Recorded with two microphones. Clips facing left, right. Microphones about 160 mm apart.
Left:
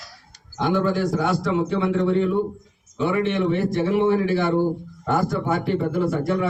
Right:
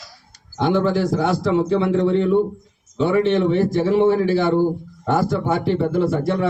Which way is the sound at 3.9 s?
35° right (ahead or behind).